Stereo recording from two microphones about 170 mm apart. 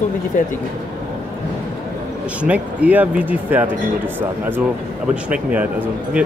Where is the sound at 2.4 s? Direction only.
10° right (ahead or behind).